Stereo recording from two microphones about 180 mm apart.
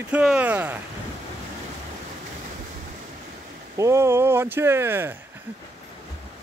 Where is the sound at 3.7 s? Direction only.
15° right (ahead or behind).